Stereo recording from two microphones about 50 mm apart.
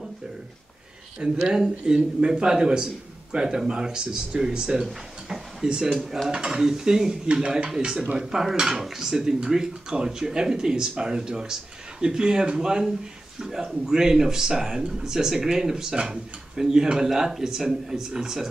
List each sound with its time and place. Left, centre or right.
1.2 s a man's voice: centre
4.8 s a sound: centre
5.7 s a man's voice: centre